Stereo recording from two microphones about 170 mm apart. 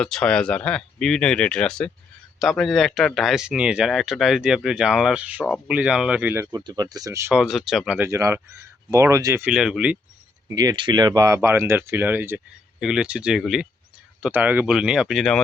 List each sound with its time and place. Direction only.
0.0 s speech: 5° left (ahead or behind); by 7.3 s 15° right (ahead or behind)
7.3 s speech: 5° right (ahead or behind)
10.5 s speech: 25° right (ahead or behind); by 15.4 s centre (ahead or behind)